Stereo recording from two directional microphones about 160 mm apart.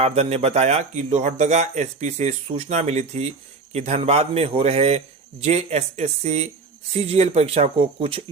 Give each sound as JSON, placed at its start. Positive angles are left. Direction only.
{"t": 0.0, "sound": "speech", "side_deg": -40}